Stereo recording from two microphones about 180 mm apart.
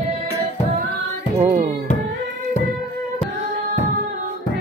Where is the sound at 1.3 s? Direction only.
40° right (ahead or behind).